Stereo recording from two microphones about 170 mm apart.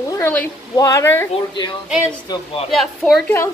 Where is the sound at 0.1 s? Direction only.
10° left (ahead or behind).